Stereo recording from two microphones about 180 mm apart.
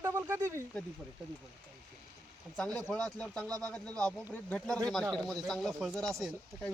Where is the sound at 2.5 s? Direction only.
5° left (ahead or behind).